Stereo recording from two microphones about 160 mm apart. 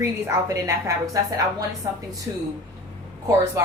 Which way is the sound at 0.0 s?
20° right (ahead or behind).